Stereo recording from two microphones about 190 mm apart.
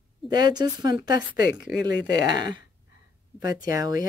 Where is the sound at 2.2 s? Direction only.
20° right (ahead or behind).